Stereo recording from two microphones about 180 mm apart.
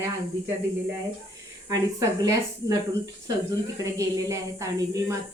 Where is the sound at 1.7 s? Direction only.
20° right (ahead or behind).